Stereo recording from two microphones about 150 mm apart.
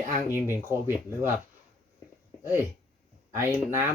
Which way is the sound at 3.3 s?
15° right (ahead or behind).